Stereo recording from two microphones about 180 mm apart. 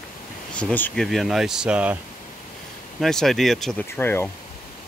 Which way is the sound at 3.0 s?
Centre (ahead or behind).